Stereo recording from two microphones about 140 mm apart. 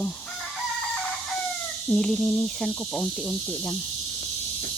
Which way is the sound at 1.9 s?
5° left (ahead or behind).